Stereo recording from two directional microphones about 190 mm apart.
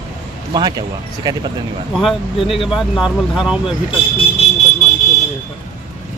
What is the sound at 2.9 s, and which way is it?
Speech, 5° right (ahead or behind).